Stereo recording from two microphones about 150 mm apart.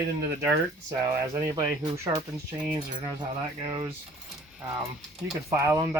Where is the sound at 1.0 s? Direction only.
20° right (ahead or behind).